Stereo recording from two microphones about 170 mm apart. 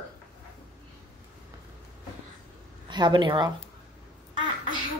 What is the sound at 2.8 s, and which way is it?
Speech, 25° right (ahead or behind).